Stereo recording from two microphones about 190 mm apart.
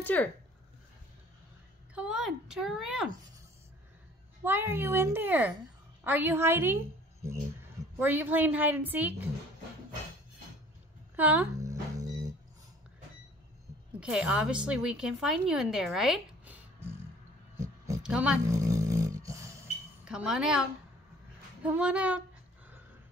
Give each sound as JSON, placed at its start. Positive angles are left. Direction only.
{"t": 0.0, "sound": "speech", "side_deg": 10}
{"t": 2.0, "sound": "speech", "side_deg": -5}
{"t": 4.5, "sound": "a woman's voice", "side_deg": -10}
{"t": 11.1, "sound": "a sound", "side_deg": -10}
{"t": 13.9, "sound": "a woman's voice", "side_deg": -5}
{"t": 17.6, "sound": "a sound", "side_deg": -15}
{"t": 18.0, "sound": "speech", "side_deg": -5}
{"t": 18.5, "sound": "a sound", "side_deg": -15}
{"t": 20.1, "sound": "speech", "side_deg": -5}
{"t": 21.6, "sound": "a woman's voice", "side_deg": -5}